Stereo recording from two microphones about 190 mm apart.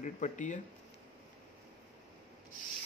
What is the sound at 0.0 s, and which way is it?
Speech, 40° left (ahead or behind).